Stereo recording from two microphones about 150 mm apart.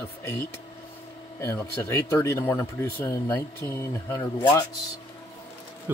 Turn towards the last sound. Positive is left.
turn(degrees=-15)  # may be behind; listen again after turning